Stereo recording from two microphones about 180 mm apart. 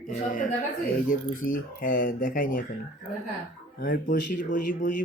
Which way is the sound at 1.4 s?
50° left (ahead or behind).